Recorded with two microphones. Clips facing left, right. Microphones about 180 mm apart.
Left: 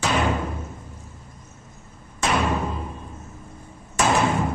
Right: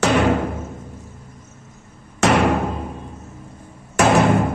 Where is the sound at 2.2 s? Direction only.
75° right (ahead or behind).